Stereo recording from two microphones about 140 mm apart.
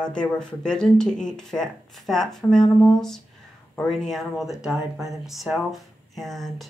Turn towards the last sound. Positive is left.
turn(degrees=0)  # may be behind; listen again after turning